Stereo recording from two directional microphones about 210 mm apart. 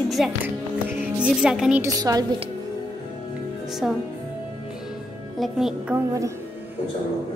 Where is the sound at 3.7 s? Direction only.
Centre (ahead or behind).